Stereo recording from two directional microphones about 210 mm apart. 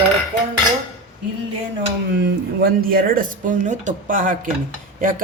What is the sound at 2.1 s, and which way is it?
A woman's voice, 50° right (ahead or behind).